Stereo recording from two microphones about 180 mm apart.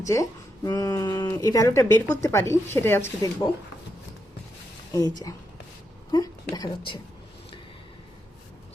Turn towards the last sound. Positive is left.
turn(degrees=25)  # may be behind; listen again after turning